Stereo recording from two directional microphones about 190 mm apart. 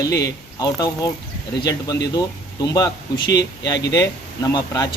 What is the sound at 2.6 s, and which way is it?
Speech, 20° left (ahead or behind).